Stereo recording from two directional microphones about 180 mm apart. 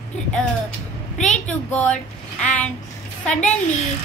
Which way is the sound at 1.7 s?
5° left (ahead or behind).